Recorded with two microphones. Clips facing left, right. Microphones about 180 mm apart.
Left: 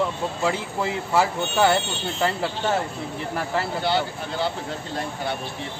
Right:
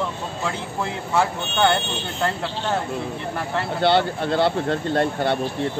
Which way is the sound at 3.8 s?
65° right (ahead or behind).